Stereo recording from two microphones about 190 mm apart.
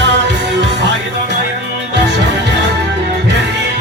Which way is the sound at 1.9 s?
65° right (ahead or behind).